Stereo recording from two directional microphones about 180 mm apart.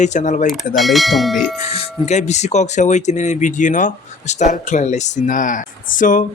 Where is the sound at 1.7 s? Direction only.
35° left (ahead or behind).